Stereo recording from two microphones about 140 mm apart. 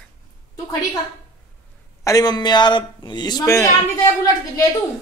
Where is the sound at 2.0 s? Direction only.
30° left (ahead or behind).